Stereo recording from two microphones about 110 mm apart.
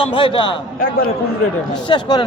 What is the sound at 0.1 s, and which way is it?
Speech, 50° left (ahead or behind).